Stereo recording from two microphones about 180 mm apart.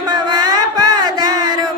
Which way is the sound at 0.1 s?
25° right (ahead or behind).